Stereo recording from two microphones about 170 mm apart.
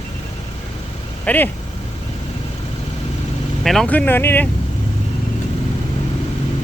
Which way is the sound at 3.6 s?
Centre (ahead or behind).